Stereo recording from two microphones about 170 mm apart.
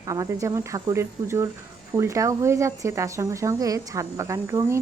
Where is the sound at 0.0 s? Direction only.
20° right (ahead or behind).